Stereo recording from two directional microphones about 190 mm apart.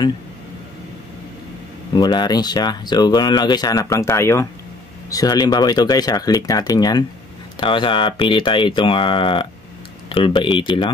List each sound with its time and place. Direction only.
2.0 s speech: 20° left (ahead or behind)